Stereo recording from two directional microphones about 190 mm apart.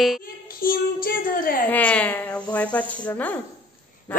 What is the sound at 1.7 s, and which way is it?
Snake, 10° left (ahead or behind).